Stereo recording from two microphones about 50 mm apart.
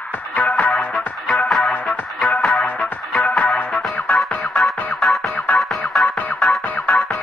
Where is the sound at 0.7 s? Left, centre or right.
Centre.